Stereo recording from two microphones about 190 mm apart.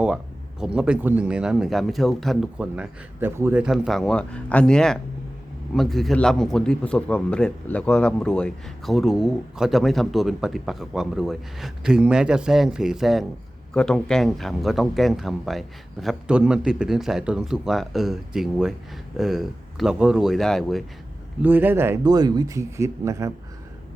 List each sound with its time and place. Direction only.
0.6 s a man's voice: 5° right (ahead or behind)
21.4 s speech: 10° right (ahead or behind)